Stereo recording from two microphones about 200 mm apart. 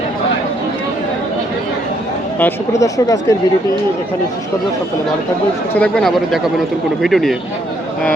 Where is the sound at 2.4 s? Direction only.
15° left (ahead or behind).